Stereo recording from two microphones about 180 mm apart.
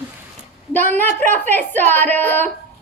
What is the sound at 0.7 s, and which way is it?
A woman's voice, 10° left (ahead or behind).